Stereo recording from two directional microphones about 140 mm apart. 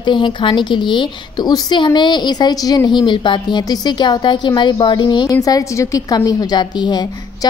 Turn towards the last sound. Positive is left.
turn(degrees=30)  # may be behind; listen again after turning